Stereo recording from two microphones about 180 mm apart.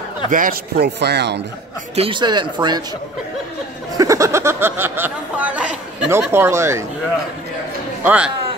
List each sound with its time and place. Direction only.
0.3 s a man's voice: 50° right (ahead or behind); by 1.4 s 70° right (ahead or behind)
2.0 s speech: 25° right (ahead or behind)
3.9 s speech: 20° right (ahead or behind)
8.0 s a man's voice: 10° right (ahead or behind)